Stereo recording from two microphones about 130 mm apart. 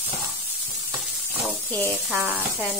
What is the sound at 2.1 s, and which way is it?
Speech, 10° right (ahead or behind).